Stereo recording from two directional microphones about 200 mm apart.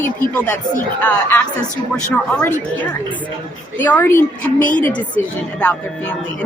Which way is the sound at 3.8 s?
10° left (ahead or behind).